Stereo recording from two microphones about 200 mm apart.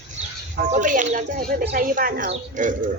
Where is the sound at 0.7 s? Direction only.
40° right (ahead or behind).